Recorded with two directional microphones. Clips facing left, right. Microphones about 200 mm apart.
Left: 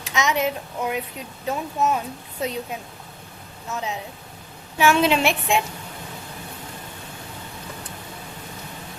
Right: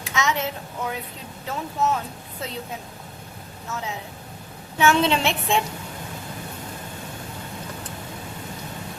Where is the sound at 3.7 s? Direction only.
20° left (ahead or behind).